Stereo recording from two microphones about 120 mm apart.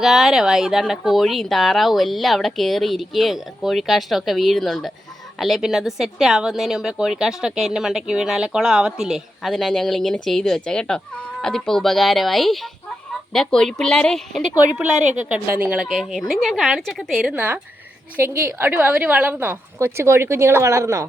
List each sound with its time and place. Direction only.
0.0 s speech: 5° right (ahead or behind)
14.5 s speech: 10° right (ahead or behind)
17.3 s a woman's voice: 15° right (ahead or behind)